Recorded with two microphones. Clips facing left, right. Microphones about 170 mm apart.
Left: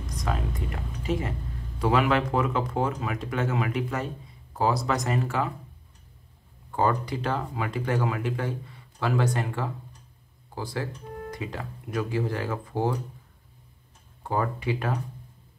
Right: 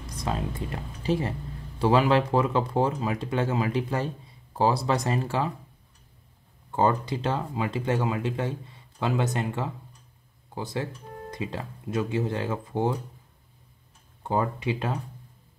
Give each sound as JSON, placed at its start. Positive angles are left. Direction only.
{"t": 0.2, "sound": "speech", "side_deg": -30}
{"t": 6.7, "sound": "speech", "side_deg": -25}
{"t": 14.2, "sound": "speech", "side_deg": -25}